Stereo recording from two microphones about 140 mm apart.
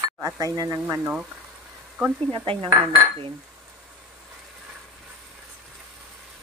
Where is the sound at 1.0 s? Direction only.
10° right (ahead or behind).